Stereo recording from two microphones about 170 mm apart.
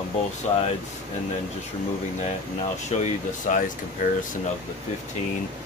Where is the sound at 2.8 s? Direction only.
45° left (ahead or behind).